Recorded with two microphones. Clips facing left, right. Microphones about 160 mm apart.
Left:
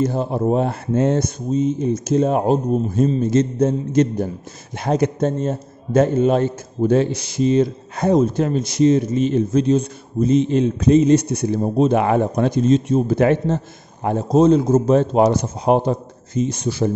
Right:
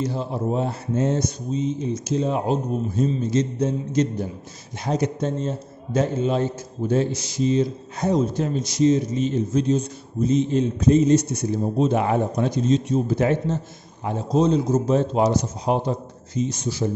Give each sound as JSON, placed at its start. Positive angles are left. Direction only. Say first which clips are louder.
{"t": 0.0, "sound": "a man's voice", "louder": "left 6 dB", "side_deg": 50}